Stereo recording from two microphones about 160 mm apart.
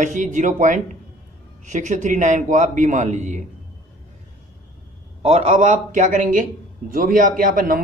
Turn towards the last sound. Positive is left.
turn(degrees=-60)  # may be behind; listen again after turning